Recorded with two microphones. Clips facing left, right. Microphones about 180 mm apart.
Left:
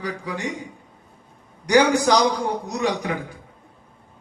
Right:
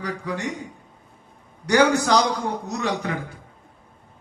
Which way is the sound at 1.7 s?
15° left (ahead or behind).